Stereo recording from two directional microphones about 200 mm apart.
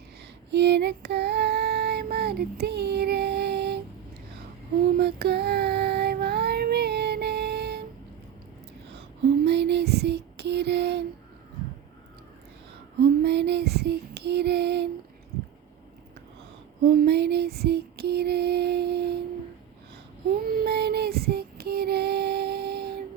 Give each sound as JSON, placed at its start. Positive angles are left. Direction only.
{"t": 0.5, "sound": "female singing", "side_deg": -55}
{"t": 4.9, "sound": "child singing", "side_deg": -55}
{"t": 9.4, "sound": "a sound", "side_deg": -55}
{"t": 13.2, "sound": "female singing", "side_deg": -55}
{"t": 16.8, "sound": "female singing", "side_deg": -50}
{"t": 20.5, "sound": "music", "side_deg": -55}